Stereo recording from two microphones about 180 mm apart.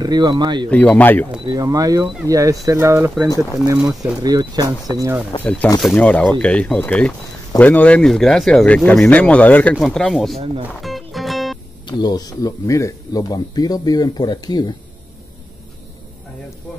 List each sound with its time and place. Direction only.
0.0 s speech: 25° right (ahead or behind)
0.7 s speech: 10° left (ahead or behind)
1.4 s speech: 20° right (ahead or behind)
5.4 s speech: 10° left (ahead or behind)
10.8 s music: centre (ahead or behind)
11.8 s speech: 25° left (ahead or behind)